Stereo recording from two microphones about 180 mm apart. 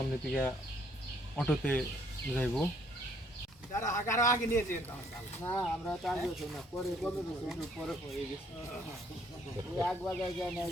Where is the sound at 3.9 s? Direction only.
15° left (ahead or behind).